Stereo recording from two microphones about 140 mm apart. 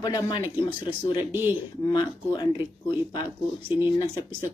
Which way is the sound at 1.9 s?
35° left (ahead or behind).